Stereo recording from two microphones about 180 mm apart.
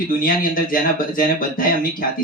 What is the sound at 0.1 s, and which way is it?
Speech, 50° left (ahead or behind).